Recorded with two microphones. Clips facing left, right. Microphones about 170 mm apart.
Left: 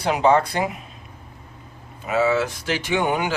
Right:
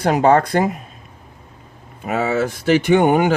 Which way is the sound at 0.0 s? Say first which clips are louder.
Right 4 dB; 50° right (ahead or behind).